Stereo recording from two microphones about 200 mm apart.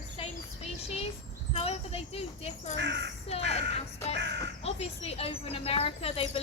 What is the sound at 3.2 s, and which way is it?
Speech, 30° left (ahead or behind).